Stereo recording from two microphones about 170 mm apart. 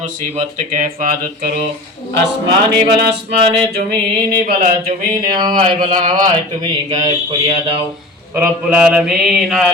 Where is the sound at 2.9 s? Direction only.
80° right.